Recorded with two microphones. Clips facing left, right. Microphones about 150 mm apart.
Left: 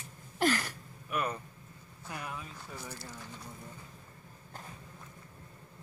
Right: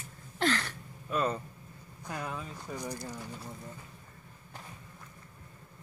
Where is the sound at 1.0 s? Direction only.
25° right (ahead or behind).